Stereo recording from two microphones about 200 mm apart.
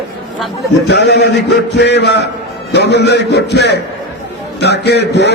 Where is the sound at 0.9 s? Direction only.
55° left (ahead or behind).